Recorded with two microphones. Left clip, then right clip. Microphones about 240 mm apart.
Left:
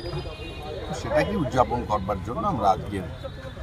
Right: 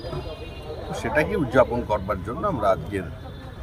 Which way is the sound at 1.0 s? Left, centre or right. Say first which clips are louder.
Right 1 dB; centre.